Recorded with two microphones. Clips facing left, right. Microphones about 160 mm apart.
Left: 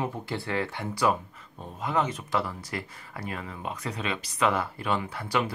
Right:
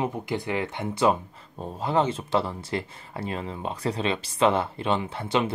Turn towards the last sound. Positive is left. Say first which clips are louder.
# right 3 dB
turn(degrees=-25)  # may be behind; listen again after turning